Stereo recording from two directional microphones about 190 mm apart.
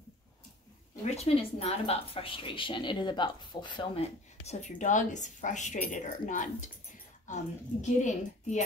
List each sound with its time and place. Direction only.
1.1 s a woman's voice: 30° left (ahead or behind)